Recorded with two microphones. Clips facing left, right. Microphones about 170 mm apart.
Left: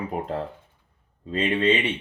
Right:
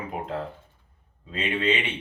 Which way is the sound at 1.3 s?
40° left (ahead or behind).